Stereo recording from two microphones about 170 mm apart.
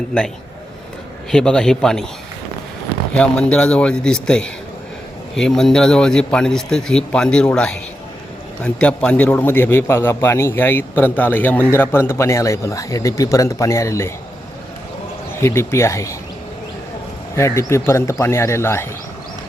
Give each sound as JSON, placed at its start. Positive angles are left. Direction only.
{"t": 0.1, "sound": "a man's voice", "side_deg": 5}
{"t": 3.2, "sound": "a man's voice", "side_deg": 5}
{"t": 15.4, "sound": "a man's voice", "side_deg": 15}
{"t": 17.3, "sound": "a man's voice", "side_deg": 15}